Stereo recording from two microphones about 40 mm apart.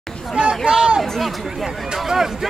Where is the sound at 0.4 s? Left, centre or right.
Centre.